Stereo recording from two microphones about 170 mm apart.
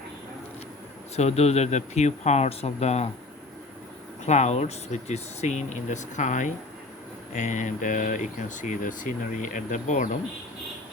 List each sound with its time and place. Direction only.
1.1 s speech: 40° left (ahead or behind)
4.3 s speech: 40° left (ahead or behind)